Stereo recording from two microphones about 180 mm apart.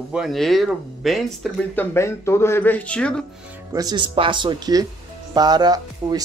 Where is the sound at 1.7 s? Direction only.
15° left (ahead or behind).